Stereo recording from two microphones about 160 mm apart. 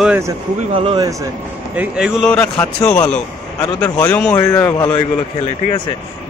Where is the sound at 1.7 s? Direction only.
10° right (ahead or behind).